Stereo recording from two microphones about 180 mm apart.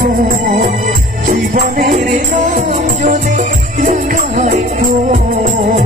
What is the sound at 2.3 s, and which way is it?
Music, 45° right (ahead or behind).